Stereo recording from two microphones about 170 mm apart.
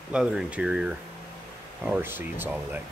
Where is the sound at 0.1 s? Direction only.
5° right (ahead or behind).